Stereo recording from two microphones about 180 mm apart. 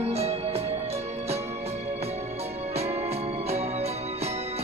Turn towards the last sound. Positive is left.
turn(degrees=-35)  # may be behind; listen again after turning